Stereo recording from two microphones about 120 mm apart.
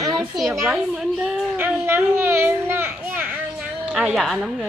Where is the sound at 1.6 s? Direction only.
20° right (ahead or behind); by 4.7 s centre (ahead or behind).